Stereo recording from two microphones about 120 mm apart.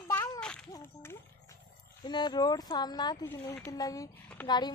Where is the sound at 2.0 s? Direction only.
35° left (ahead or behind).